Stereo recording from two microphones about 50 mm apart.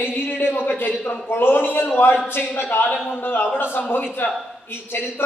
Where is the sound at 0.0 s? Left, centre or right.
Left.